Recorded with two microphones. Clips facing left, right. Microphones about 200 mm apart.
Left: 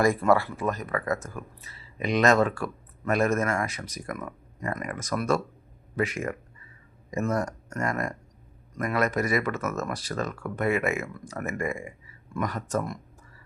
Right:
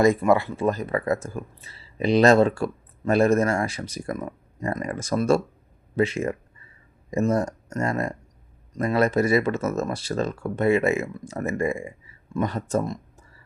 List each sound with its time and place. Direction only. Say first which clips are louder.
0.0 s speech: right 3 dB; 20° right (ahead or behind)